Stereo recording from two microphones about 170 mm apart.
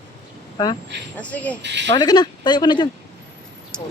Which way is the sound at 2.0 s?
25° left (ahead or behind).